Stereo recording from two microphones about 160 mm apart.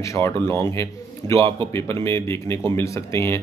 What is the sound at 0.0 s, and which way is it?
Speech, 15° left (ahead or behind).